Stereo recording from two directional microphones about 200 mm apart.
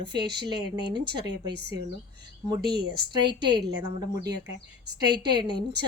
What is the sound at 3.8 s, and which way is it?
Speech, 20° right (ahead or behind).